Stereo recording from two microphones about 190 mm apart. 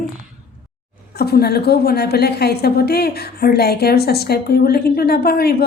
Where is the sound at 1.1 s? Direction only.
55° left (ahead or behind).